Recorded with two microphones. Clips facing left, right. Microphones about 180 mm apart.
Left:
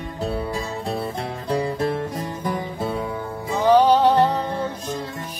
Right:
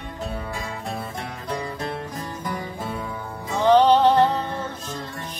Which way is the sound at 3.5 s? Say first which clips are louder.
Even; 10° left (ahead or behind).